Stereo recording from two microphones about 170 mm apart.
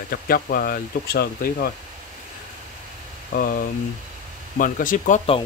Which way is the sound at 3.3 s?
60° left (ahead or behind).